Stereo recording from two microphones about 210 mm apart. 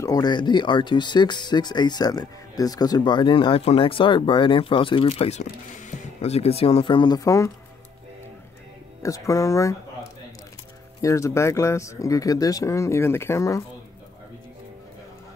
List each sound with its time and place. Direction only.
0.0 s speech: 20° left (ahead or behind)
9.0 s speech: 15° left (ahead or behind)
11.0 s speech: 15° left (ahead or behind)